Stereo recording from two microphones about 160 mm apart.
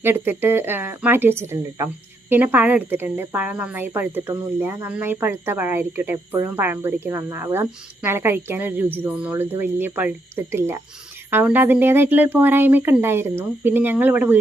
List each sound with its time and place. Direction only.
0.3 s speech: 15° right (ahead or behind)